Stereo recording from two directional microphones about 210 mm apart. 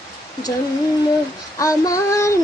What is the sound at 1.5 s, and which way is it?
Female singing, 15° left (ahead or behind).